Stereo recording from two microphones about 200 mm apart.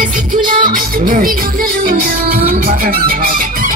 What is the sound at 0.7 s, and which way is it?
Music, 45° right (ahead or behind).